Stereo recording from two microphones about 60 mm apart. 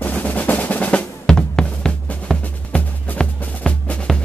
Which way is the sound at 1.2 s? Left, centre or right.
Centre.